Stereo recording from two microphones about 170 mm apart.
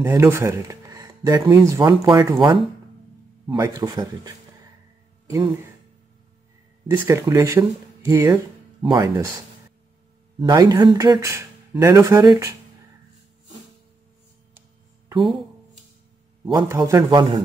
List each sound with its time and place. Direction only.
0.0 s speech: 15° right (ahead or behind)
6.9 s speech: 20° right (ahead or behind)
10.4 s speech: 25° right (ahead or behind)
16.6 s speech: 20° right (ahead or behind)